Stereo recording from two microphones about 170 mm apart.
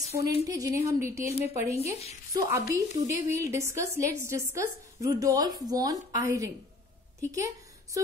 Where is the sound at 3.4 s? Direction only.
15° right (ahead or behind).